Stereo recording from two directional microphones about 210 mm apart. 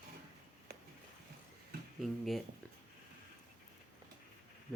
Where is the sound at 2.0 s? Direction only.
Centre (ahead or behind).